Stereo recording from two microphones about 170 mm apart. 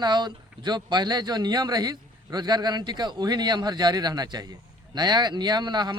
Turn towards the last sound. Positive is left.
turn(degrees=-25)  # may be behind; listen again after turning